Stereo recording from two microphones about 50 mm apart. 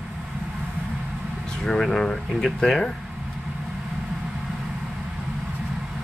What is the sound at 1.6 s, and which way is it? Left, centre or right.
Speech, centre.